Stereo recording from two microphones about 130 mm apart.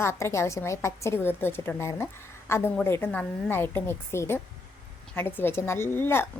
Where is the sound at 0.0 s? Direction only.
20° left (ahead or behind).